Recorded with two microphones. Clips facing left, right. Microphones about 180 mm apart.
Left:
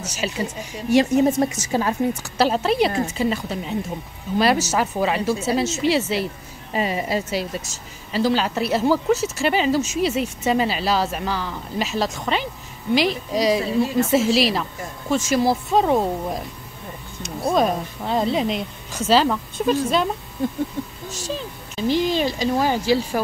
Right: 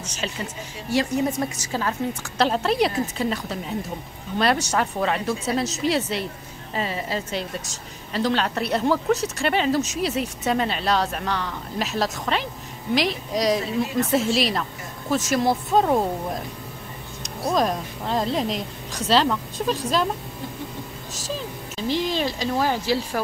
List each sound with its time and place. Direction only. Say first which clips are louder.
0.0 s speech: left 4 dB; 10° left (ahead or behind)
0.8 s a woman's voice: left 6 dB; 20° left (ahead or behind)
2.3 s a woman's voice: left 1 dB; 5° left (ahead or behind)
6.7 s a woman's voice: left 4 dB; 15° left (ahead or behind)
21.7 s a woman's voice: left 4 dB; centre (ahead or behind)